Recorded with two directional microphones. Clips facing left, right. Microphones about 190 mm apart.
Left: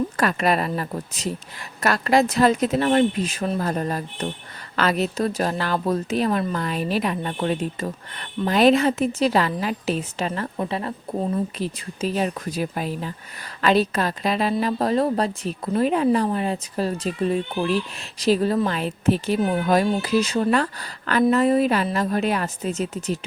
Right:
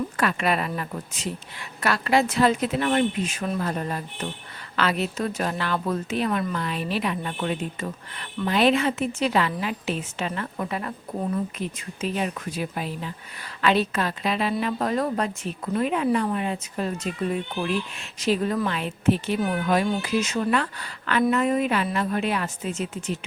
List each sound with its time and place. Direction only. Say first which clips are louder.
0.2 s a woman's voice: left 2 dB; 40° left (ahead or behind)